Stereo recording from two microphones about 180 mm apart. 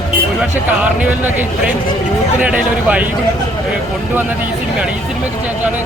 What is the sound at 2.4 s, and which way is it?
Speech, 10° right (ahead or behind).